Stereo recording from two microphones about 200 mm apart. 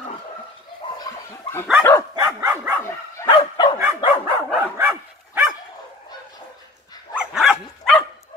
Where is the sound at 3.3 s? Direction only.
25° left (ahead or behind).